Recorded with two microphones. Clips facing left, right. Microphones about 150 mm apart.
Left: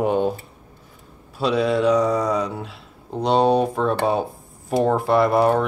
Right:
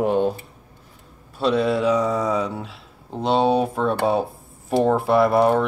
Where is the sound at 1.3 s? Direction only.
Centre (ahead or behind).